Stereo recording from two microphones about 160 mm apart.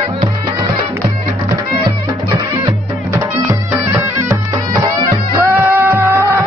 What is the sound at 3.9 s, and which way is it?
Bagpipes, 10° right (ahead or behind).